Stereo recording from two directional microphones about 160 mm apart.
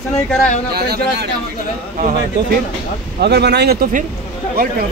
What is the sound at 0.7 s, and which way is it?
Speech, 80° right.